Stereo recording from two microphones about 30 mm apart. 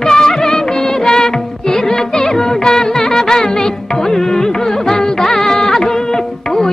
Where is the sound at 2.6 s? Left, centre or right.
Left.